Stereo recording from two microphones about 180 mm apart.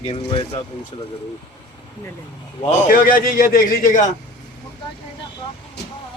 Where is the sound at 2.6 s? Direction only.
40° left (ahead or behind).